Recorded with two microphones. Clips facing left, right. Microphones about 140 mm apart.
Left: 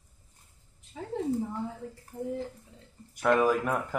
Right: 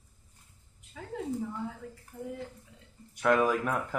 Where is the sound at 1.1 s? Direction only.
30° left (ahead or behind).